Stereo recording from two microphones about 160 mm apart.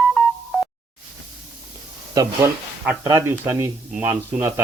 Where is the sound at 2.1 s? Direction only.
15° right (ahead or behind).